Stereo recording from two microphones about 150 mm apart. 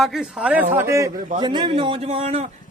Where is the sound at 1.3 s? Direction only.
30° right (ahead or behind).